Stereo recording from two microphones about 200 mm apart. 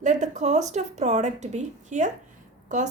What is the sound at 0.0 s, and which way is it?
A woman's voice, 35° right (ahead or behind).